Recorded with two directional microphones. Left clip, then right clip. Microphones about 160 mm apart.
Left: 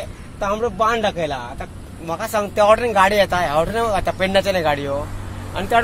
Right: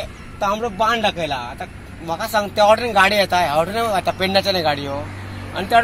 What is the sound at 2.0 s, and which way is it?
Speech, 20° left (ahead or behind).